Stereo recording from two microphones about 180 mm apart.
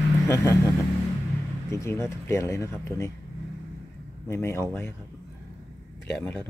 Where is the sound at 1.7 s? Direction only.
15° left (ahead or behind).